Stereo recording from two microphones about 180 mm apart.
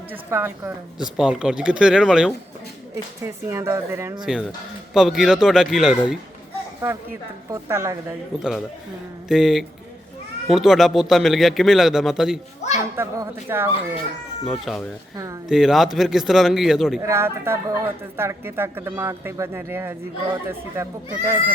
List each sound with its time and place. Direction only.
0.1 s speech: 15° right (ahead or behind)
0.9 s a man's voice: 5° right (ahead or behind)
2.9 s speech: 15° right (ahead or behind)
4.9 s a man's voice: centre (ahead or behind)
6.8 s speech: 15° right (ahead or behind)
8.4 s a man's voice: 5° right (ahead or behind)
12.6 s children playing: 40° left (ahead or behind)
13.0 s speech: 10° right (ahead or behind)
14.4 s a man's voice: centre (ahead or behind)
15.1 s speech: 20° right (ahead or behind)
15.4 s a man's voice: centre (ahead or behind)
17.0 s speech: 15° right (ahead or behind)